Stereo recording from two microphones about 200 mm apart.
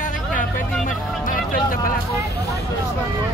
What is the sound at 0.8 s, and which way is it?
Vehicle, 40° left (ahead or behind).